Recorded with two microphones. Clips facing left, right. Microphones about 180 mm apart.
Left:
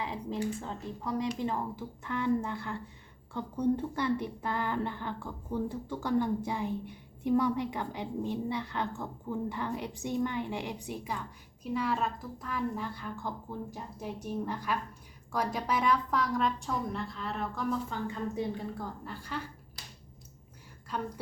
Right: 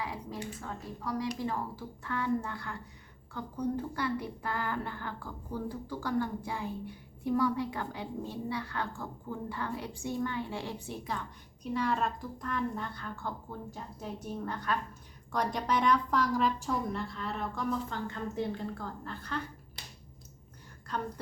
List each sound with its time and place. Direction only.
0.0 s speech: 25° left (ahead or behind)
11.6 s a woman's voice: 5° left (ahead or behind)